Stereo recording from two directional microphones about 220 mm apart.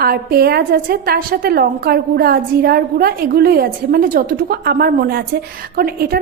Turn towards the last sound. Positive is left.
turn(degrees=-45)  # may be behind; listen again after turning